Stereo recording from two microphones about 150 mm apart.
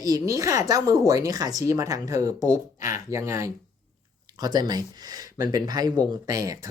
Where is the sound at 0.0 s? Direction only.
20° right (ahead or behind).